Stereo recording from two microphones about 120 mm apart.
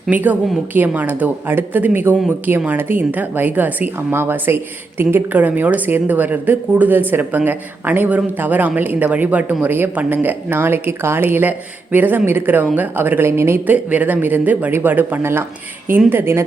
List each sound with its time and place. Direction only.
0.1 s a woman's voice: 15° right (ahead or behind)